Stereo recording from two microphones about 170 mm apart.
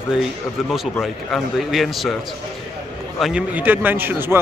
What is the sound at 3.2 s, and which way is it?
A man's voice, 5° right (ahead or behind).